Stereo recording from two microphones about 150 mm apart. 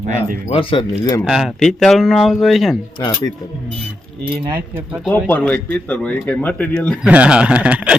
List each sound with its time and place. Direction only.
0.0 s speech: 60° right (ahead or behind)
0.5 s speech: 35° left (ahead or behind)
1.2 s speech: centre (ahead or behind)
3.0 s speech: 30° left (ahead or behind)
5.1 s speech: 10° left (ahead or behind)
7.0 s speech: 10° right (ahead or behind)